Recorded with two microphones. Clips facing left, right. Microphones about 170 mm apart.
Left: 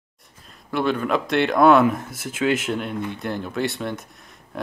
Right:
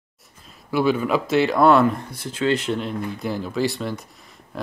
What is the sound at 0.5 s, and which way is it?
Speech, 5° right (ahead or behind).